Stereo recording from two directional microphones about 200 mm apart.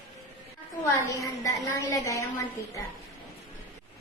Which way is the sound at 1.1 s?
15° left (ahead or behind).